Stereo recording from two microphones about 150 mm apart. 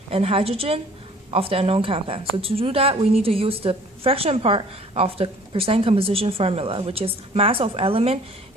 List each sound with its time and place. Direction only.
0.1 s a woman's voice: 40° right (ahead or behind)